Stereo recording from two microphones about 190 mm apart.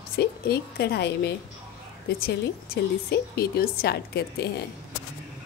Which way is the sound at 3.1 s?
55° left (ahead or behind).